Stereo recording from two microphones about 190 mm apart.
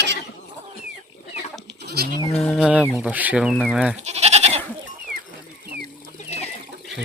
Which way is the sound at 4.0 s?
35° right (ahead or behind).